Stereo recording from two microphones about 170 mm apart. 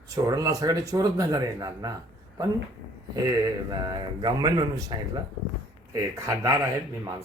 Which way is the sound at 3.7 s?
25° right (ahead or behind).